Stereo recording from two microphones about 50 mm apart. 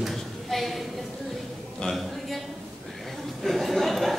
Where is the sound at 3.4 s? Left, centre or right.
Centre.